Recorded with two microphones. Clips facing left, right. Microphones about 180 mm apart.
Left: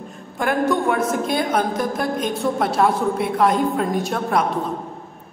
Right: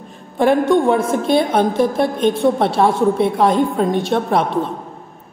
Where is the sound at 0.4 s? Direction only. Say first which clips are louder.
Right 6 dB; 25° right (ahead or behind).